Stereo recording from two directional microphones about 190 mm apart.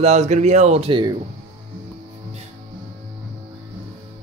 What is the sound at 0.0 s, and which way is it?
Speech, 35° right (ahead or behind).